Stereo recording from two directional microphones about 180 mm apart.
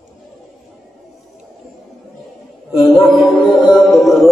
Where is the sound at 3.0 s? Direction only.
25° left (ahead or behind).